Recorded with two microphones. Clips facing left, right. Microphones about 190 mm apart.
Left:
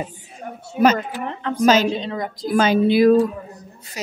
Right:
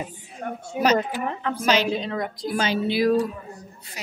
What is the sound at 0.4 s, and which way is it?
Speech, 65° right (ahead or behind).